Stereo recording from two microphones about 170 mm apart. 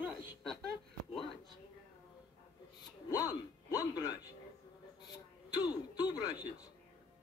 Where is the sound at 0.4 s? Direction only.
Centre (ahead or behind).